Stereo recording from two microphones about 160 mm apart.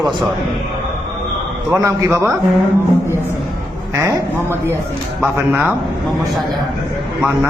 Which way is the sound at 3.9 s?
15° right (ahead or behind).